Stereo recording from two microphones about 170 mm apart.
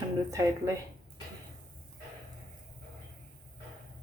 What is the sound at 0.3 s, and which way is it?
Speech, 20° right (ahead or behind).